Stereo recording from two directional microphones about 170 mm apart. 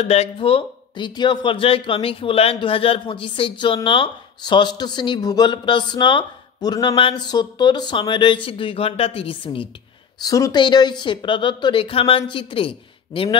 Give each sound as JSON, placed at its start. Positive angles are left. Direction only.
{"t": 0.0, "sound": "a man's voice", "side_deg": 40}
{"t": 10.2, "sound": "a man's voice", "side_deg": 20}